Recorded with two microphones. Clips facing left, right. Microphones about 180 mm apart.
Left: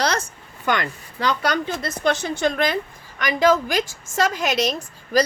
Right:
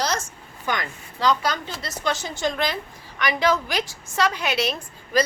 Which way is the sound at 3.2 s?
45° left (ahead or behind).